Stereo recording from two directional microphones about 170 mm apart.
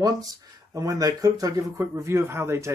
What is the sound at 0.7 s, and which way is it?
A man's voice, 20° right (ahead or behind).